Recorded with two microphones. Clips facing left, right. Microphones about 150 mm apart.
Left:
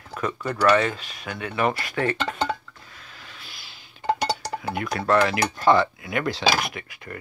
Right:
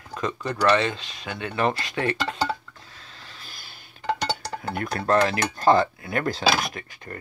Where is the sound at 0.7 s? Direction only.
25° right (ahead or behind).